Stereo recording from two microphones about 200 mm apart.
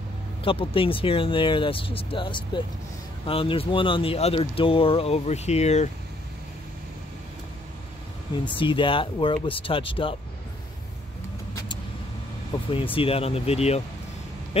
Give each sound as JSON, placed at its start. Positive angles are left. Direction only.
{"t": 0.4, "sound": "speech", "side_deg": 25}
{"t": 8.5, "sound": "speech", "side_deg": 25}
{"t": 12.5, "sound": "vehicle", "side_deg": 20}
{"t": 12.9, "sound": "speech", "side_deg": 30}